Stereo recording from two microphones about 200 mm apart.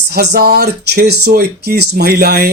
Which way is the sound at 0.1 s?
50° right (ahead or behind).